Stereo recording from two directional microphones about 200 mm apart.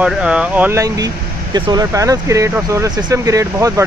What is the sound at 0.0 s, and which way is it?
Speech, 5° right (ahead or behind).